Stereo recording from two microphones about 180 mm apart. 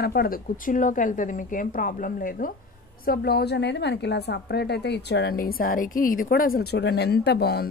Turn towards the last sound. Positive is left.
turn(degrees=60)  # may be behind; listen again after turning